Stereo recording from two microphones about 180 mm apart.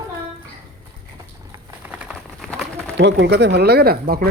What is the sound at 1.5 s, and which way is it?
Patter, 15° right (ahead or behind).